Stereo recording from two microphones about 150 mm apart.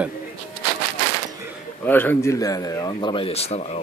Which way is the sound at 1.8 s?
15° left (ahead or behind).